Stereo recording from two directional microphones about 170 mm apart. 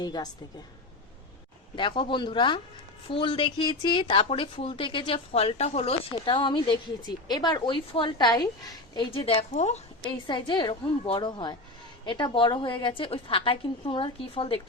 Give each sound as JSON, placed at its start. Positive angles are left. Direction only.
{"t": 0.0, "sound": "a woman's voice", "side_deg": 25}
{"t": 1.7, "sound": "a woman's voice", "side_deg": 30}
{"t": 9.1, "sound": "speech", "side_deg": 35}
{"t": 10.0, "sound": "a woman's voice", "side_deg": 30}